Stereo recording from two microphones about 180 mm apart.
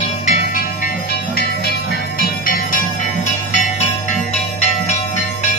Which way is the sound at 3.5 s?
40° left (ahead or behind).